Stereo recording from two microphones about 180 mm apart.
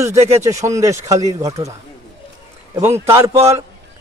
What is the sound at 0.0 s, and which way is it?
Speech, 15° right (ahead or behind).